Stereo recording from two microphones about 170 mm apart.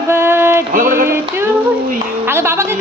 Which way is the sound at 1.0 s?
15° right (ahead or behind).